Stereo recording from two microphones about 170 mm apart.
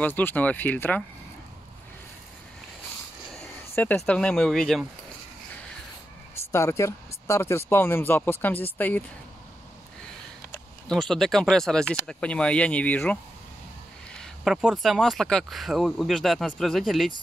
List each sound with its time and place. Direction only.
0.0 s speech: 10° left (ahead or behind)
3.3 s speech: 10° left (ahead or behind)
6.5 s speech: 15° left (ahead or behind)
10.9 s speech: centre (ahead or behind)
14.2 s speech: centre (ahead or behind)